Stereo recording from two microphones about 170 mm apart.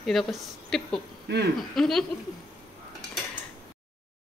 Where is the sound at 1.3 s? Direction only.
90° right.